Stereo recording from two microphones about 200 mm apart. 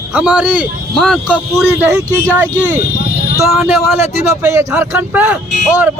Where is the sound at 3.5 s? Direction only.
5° right (ahead or behind).